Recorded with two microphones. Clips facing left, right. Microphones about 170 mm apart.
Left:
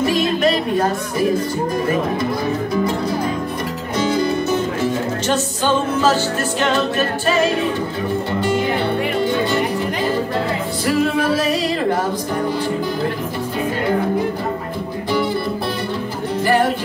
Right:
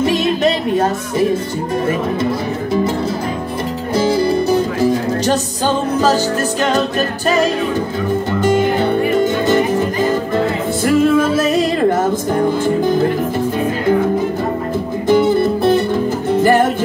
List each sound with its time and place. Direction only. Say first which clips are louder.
0.0 s a sound: right 2 dB; 20° right (ahead or behind)
3.9 s music: right 4 dB; 35° right (ahead or behind)
10.9 s music: right 5 dB; 45° right (ahead or behind)
15.0 s music: right 8 dB; 45° right (ahead or behind)